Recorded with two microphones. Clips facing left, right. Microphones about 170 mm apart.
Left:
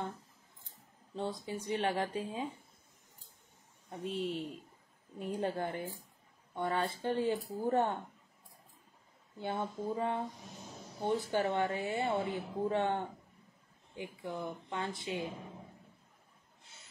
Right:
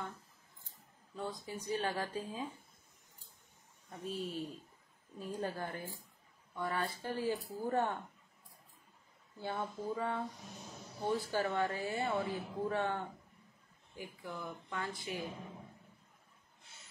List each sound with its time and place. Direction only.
1.1 s a woman's voice: 25° left (ahead or behind)
3.9 s a woman's voice: 25° left (ahead or behind)
5.2 s a woman's voice: 25° left (ahead or behind)
9.4 s a woman's voice: 20° left (ahead or behind)